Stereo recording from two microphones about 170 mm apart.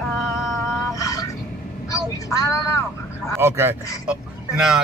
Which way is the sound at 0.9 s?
20° left (ahead or behind).